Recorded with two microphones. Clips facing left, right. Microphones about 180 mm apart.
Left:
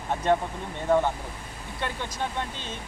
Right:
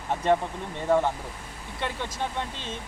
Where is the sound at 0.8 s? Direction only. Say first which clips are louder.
Even; 5° right (ahead or behind).